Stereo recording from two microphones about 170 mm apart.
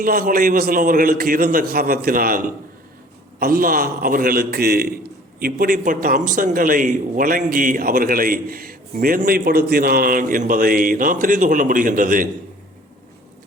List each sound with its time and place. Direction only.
0.0 s a man's voice: 55° right (ahead or behind)